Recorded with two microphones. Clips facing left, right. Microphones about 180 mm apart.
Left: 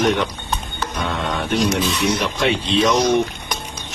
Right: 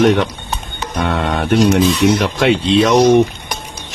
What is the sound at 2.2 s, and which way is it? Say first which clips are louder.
Speech: right 6 dB; 65° right (ahead or behind).